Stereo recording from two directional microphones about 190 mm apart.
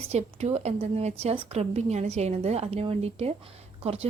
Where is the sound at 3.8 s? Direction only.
30° right (ahead or behind).